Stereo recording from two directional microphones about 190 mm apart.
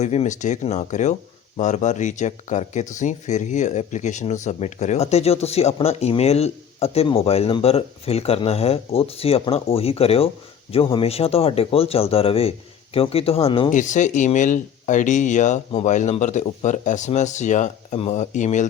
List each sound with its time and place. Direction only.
0.0 s speech: 35° left (ahead or behind)
13.7 s speech: 40° left (ahead or behind)